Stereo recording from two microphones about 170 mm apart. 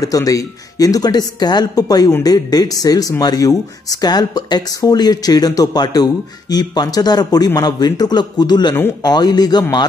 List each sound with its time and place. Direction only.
0.0 s speech: 20° left (ahead or behind)